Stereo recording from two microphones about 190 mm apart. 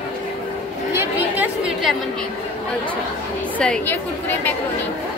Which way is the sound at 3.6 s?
5° left (ahead or behind).